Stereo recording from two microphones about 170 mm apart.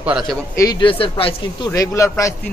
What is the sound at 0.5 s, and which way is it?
Speech, 20° left (ahead or behind).